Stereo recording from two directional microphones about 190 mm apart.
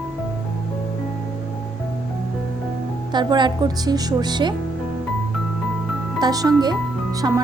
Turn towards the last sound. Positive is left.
turn(degrees=-20)  # may be behind; listen again after turning